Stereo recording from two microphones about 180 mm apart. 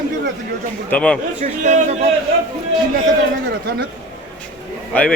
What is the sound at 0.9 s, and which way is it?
Speech, 5° left (ahead or behind).